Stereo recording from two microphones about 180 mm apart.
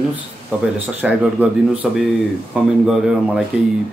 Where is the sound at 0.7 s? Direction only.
5° right (ahead or behind).